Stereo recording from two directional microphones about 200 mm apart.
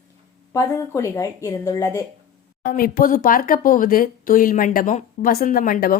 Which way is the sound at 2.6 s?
45° left (ahead or behind).